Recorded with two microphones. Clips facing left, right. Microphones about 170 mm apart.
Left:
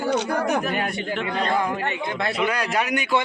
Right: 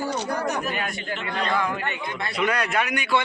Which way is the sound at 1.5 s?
30° left (ahead or behind).